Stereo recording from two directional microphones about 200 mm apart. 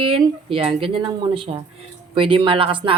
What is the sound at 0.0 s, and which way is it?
Speech, 25° right (ahead or behind).